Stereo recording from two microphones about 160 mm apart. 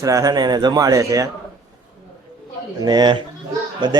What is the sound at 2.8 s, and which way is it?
Speech, 25° right (ahead or behind).